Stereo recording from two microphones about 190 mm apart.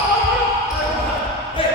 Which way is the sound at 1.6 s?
30° left (ahead or behind).